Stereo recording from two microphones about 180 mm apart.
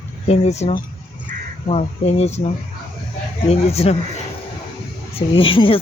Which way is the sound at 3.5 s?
35° left (ahead or behind).